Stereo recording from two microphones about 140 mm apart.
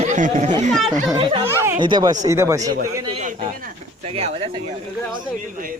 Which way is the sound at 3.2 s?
65° right (ahead or behind).